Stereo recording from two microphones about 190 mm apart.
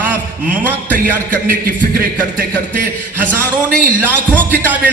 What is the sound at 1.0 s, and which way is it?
Music, 10° right (ahead or behind).